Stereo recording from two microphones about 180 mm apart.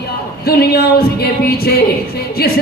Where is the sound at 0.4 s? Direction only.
60° left (ahead or behind).